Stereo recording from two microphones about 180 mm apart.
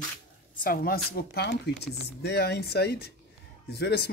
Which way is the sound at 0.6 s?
55° left (ahead or behind).